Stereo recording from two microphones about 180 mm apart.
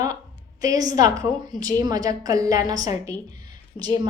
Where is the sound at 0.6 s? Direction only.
20° right (ahead or behind).